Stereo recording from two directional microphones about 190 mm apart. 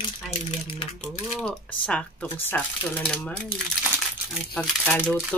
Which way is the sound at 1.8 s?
5° left (ahead or behind).